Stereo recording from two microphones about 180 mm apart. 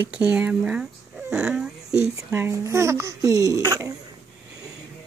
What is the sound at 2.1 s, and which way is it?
Speech, 15° right (ahead or behind).